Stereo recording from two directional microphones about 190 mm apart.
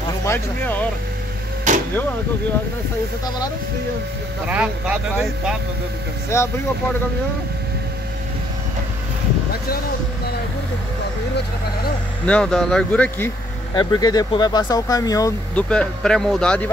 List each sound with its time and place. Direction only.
0.2 s speech: 10° left (ahead or behind)
4.5 s speech: 5° right (ahead or behind)
6.3 s speech: 15° left (ahead or behind)
12.3 s speech: 5° left (ahead or behind)
13.7 s speech: 20° left (ahead or behind)
15.5 s speech: 5° left (ahead or behind)